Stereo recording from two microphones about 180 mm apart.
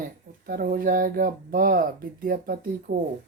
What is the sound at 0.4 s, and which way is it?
Speech, 55° right (ahead or behind).